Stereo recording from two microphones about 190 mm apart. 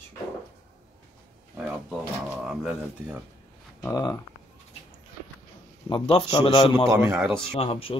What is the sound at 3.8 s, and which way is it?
Speech, 15° left (ahead or behind).